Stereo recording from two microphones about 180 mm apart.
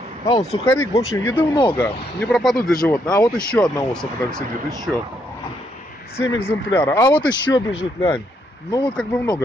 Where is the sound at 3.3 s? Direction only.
5° left (ahead or behind).